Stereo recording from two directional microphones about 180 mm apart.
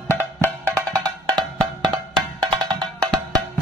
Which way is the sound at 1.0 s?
25° right (ahead or behind).